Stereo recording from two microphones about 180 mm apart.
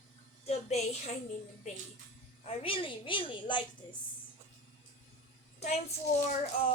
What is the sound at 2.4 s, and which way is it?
A woman's voice, 35° left (ahead or behind).